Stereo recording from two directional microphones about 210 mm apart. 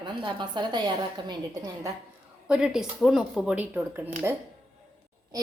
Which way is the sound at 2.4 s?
5° right (ahead or behind).